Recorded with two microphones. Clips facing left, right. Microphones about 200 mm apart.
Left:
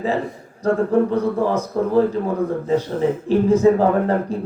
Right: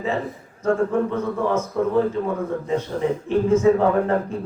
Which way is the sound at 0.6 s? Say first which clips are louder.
Left 3 dB; 35° left (ahead or behind).